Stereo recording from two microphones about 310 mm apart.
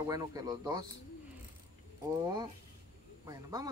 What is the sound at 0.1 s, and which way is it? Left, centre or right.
Speech, centre.